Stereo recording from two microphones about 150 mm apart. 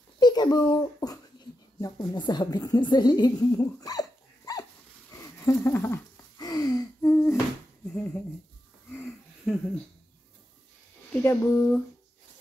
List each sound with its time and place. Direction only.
0.2 s a child's voice: 25° left (ahead or behind)
6.3 s gasp: 25° left (ahead or behind)
7.9 s speech: 10° left (ahead or behind)
9.5 s speech: centre (ahead or behind)
11.2 s speech: 15° left (ahead or behind)